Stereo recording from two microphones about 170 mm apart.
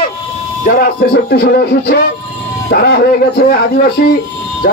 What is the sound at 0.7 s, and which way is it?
Music, 60° left (ahead or behind).